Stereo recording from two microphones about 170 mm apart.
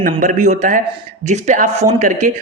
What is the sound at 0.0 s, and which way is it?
A man's voice, 50° right (ahead or behind).